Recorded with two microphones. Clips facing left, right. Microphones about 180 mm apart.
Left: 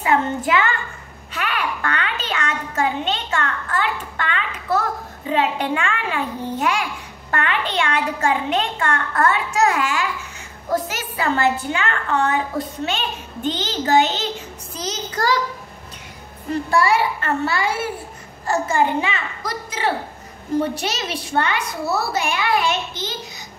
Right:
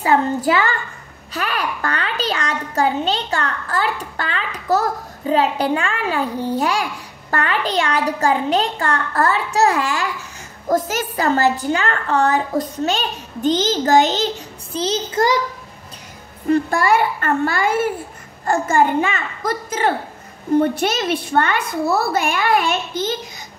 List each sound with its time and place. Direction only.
0.0 s a child's voice: 35° right (ahead or behind)
16.8 s a child's voice: 50° right (ahead or behind)